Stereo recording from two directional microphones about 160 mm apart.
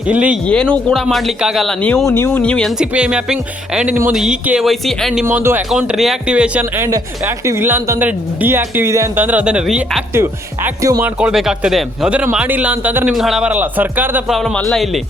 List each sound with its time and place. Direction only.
0.1 s speech: 10° right (ahead or behind)
0.4 s speech: 5° left (ahead or behind)
2.0 s speech: 15° left (ahead or behind); by 5.2 s centre (ahead or behind)
5.2 s speech: 15° right (ahead or behind)
5.7 s speech: centre (ahead or behind)
10.2 s speech: 20° right (ahead or behind)
11.2 s speech: 5° right (ahead or behind)
13.1 s speech: centre (ahead or behind)
14.3 s speech: centre (ahead or behind)